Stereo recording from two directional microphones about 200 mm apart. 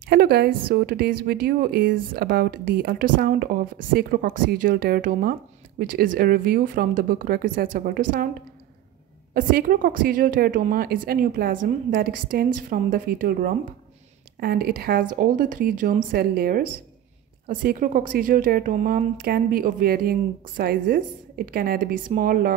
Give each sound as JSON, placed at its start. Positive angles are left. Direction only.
{"t": 0.1, "sound": "a woman's voice", "side_deg": -50}
{"t": 9.3, "sound": "a woman's voice", "side_deg": -45}